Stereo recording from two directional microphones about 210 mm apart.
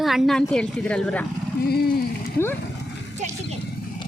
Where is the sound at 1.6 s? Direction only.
45° left (ahead or behind).